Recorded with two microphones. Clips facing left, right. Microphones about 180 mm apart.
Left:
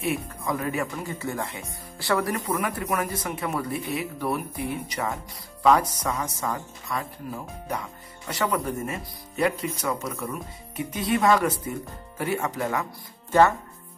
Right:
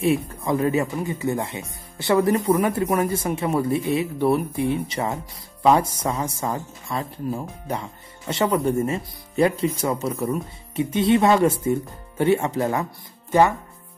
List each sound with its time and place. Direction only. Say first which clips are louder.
0.0 s speech: right 7 dB; 30° right (ahead or behind)
13.3 s speech: right 1 dB; 15° right (ahead or behind)